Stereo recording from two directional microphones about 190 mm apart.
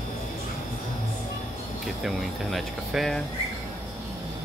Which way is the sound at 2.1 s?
Centre (ahead or behind).